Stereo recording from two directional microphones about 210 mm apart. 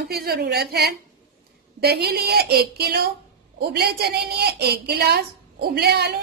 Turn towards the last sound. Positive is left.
turn(degrees=-50)  # may be behind; listen again after turning